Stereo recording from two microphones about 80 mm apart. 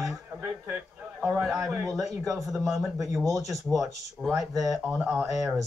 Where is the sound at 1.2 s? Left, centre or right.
Right.